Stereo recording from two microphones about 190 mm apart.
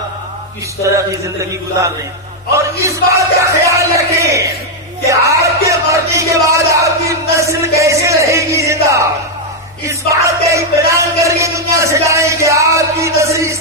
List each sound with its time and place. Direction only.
0.8 s speech: 15° right (ahead or behind)
5.0 s music: 15° right (ahead or behind)
9.8 s a sound: 15° right (ahead or behind)